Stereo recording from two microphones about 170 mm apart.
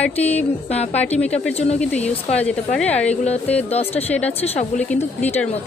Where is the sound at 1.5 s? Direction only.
40° left (ahead or behind).